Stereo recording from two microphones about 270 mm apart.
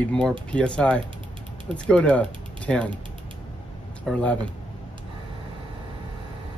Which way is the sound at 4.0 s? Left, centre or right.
Centre.